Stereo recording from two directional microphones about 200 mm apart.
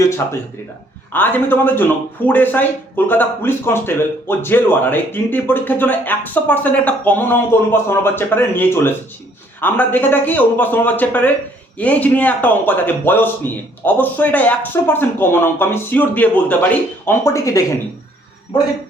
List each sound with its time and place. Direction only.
1.1 s a man's voice: 10° left (ahead or behind)